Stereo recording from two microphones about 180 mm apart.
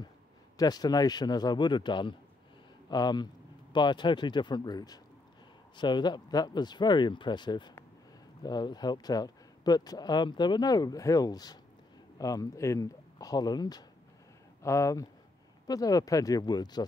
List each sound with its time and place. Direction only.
0.6 s speech: 20° left (ahead or behind)